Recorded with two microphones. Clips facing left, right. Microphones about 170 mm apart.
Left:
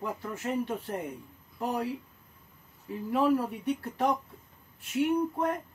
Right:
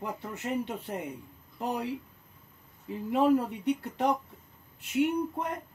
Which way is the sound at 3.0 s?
20° right (ahead or behind).